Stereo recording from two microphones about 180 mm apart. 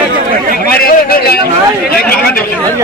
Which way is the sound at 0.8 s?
55° left (ahead or behind).